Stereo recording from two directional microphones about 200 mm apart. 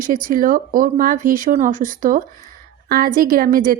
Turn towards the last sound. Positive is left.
turn(degrees=-45)  # may be behind; listen again after turning